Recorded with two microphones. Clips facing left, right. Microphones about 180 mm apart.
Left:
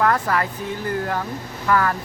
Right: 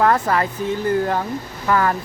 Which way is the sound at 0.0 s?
25° right (ahead or behind).